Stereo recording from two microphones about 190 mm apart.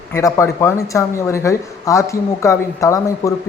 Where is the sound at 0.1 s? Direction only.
15° left (ahead or behind).